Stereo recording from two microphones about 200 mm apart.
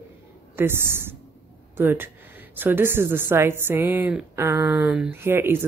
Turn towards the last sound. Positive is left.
turn(degrees=-10)  # may be behind; listen again after turning